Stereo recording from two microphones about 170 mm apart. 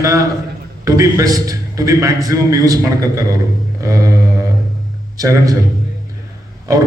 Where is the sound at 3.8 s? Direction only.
20° right (ahead or behind).